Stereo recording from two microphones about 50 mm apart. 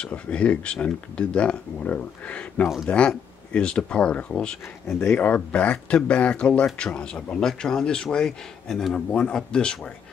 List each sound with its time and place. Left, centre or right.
0.3 s speech: left
5.2 s speech: left